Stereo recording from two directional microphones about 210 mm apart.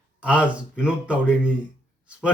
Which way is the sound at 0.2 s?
5° right (ahead or behind).